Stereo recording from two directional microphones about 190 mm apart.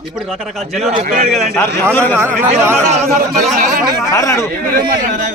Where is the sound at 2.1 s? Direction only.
10° right (ahead or behind).